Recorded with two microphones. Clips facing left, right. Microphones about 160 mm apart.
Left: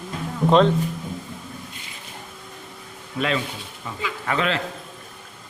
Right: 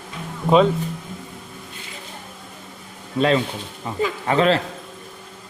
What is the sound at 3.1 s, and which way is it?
Speech, 35° right (ahead or behind).